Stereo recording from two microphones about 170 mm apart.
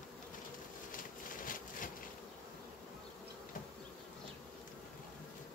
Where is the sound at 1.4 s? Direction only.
55° left (ahead or behind).